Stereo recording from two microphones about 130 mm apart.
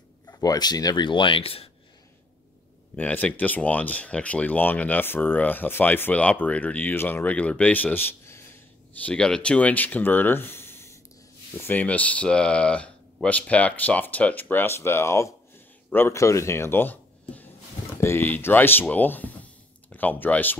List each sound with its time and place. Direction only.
0.3 s speech: 30° left (ahead or behind); by 1.7 s 45° left (ahead or behind)
3.0 s speech: 10° left (ahead or behind)